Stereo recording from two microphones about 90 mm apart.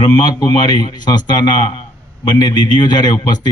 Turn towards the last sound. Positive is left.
turn(degrees=55)  # may be behind; listen again after turning